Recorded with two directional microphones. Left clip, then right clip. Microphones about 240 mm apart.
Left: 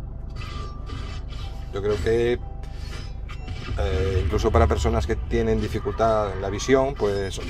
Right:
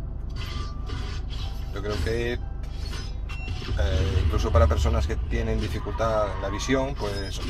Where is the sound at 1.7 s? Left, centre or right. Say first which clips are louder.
Left 7 dB; left.